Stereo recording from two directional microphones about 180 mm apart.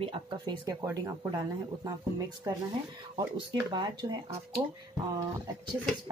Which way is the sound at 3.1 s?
25° right (ahead or behind).